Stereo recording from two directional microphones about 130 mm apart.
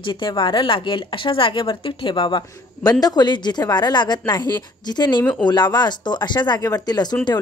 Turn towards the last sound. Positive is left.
turn(degrees=30)  # may be behind; listen again after turning